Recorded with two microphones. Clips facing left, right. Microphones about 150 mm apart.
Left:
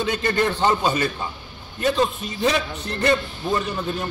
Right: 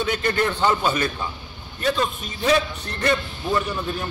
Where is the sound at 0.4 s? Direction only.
25° left (ahead or behind).